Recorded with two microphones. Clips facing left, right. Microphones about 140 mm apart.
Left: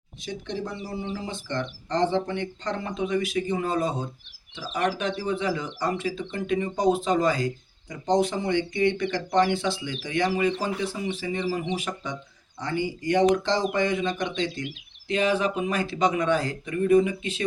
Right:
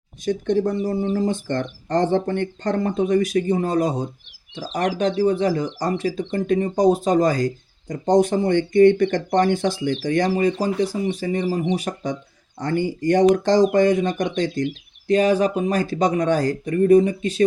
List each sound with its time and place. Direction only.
0.3 s speech: 50° right (ahead or behind)